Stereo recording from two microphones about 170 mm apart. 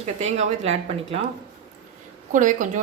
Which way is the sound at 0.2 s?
40° right (ahead or behind).